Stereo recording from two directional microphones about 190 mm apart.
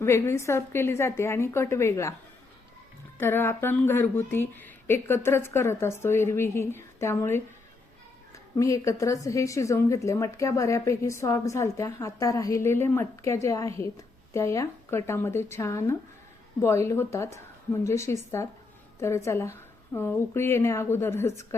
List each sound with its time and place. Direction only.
0.0 s a woman's voice: 15° left (ahead or behind)
3.2 s a woman's voice: 10° left (ahead or behind)
8.5 s a woman's voice: 15° left (ahead or behind)